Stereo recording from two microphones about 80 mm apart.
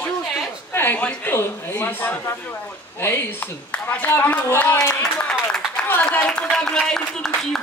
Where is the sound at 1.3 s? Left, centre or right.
Left.